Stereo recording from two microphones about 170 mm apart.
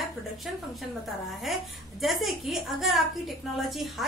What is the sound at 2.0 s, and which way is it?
A woman's voice, centre (ahead or behind).